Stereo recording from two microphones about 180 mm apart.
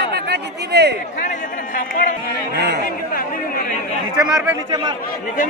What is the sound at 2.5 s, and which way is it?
Speech, 70° right (ahead or behind).